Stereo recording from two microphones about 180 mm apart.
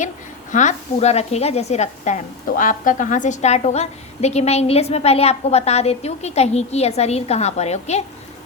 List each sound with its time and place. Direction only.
0.5 s speech: 40° left (ahead or behind)